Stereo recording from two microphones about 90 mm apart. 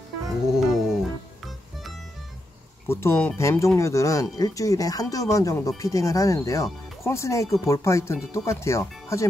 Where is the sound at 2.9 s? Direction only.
30° left (ahead or behind).